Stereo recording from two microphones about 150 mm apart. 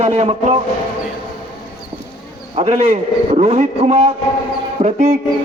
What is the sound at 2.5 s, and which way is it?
Speech, 50° right (ahead or behind).